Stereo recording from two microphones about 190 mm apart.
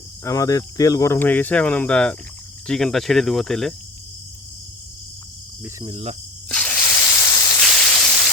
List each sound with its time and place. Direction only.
0.3 s speech: 15° left (ahead or behind)
5.6 s speech: 20° right (ahead or behind)
6.5 s a sound: 5° left (ahead or behind)